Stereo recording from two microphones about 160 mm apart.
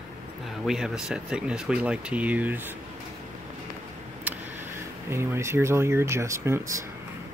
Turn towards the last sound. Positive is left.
turn(degrees=-15)  # may be behind; listen again after turning